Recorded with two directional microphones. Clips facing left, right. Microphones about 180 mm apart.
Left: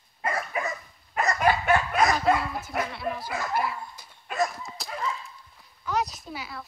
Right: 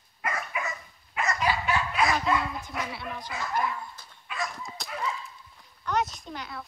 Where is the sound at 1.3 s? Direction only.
50° left (ahead or behind).